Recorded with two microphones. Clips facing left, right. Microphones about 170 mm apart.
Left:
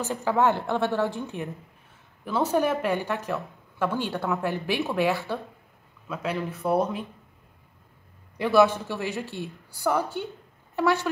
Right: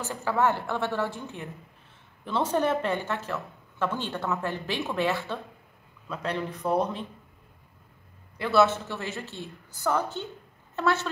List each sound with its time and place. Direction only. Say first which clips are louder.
0.0 s a woman's voice: left 3 dB; 15° left (ahead or behind)
8.4 s a woman's voice: left 3 dB; 15° left (ahead or behind)